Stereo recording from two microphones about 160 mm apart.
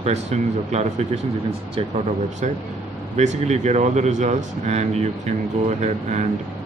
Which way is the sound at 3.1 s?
45° right (ahead or behind).